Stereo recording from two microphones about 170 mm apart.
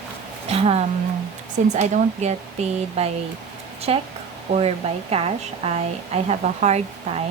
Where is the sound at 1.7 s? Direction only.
45° right (ahead or behind).